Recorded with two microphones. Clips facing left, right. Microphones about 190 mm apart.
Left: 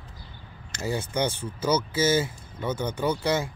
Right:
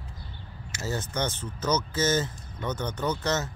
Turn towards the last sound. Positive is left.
turn(degrees=10)  # may be behind; listen again after turning